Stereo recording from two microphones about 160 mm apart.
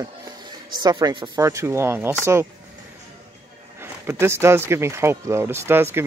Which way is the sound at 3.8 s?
15° right (ahead or behind).